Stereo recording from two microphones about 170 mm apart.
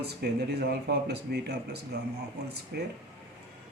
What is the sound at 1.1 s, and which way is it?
Speech, 70° right (ahead or behind).